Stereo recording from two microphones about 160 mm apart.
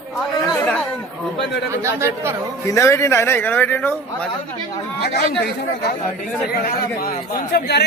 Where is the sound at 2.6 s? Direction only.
20° left (ahead or behind).